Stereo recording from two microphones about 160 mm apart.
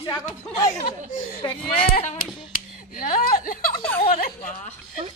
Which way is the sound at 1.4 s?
25° left (ahead or behind).